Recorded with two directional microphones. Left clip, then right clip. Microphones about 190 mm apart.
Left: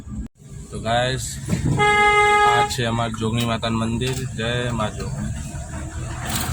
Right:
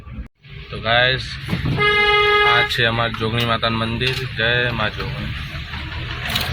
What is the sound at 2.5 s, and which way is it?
Speech, 5° left (ahead or behind).